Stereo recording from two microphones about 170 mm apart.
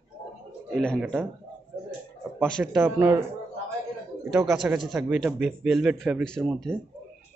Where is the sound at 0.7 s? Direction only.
Centre (ahead or behind).